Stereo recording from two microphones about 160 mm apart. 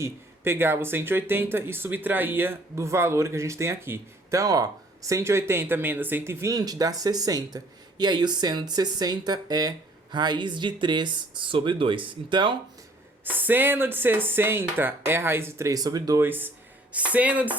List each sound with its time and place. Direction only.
0.0 s speech: 15° right (ahead or behind)
13.2 s speech: 10° right (ahead or behind)